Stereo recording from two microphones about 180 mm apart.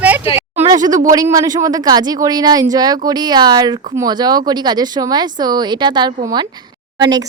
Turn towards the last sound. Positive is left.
turn(degrees=-20)  # may be behind; listen again after turning